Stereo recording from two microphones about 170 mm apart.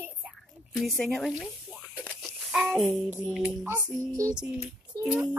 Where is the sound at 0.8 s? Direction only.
Centre (ahead or behind).